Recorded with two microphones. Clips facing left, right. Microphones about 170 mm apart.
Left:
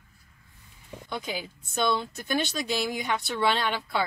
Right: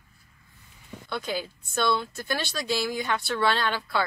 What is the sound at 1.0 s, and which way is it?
A woman's voice, 15° left (ahead or behind).